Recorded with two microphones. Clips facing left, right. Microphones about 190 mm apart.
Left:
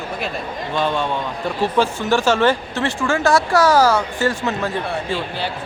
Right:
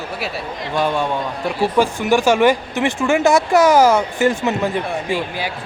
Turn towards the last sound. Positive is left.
turn(degrees=-10)  # may be behind; listen again after turning